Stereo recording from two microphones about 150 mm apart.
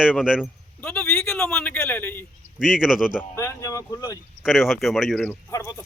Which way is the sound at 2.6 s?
5° right (ahead or behind).